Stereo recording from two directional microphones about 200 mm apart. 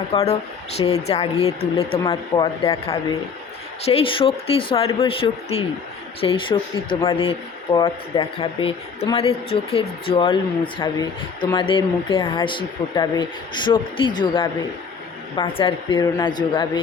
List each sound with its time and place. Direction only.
0.1 s speech: 30° left (ahead or behind)